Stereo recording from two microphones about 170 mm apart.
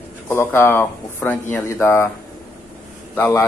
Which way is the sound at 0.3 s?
10° left (ahead or behind).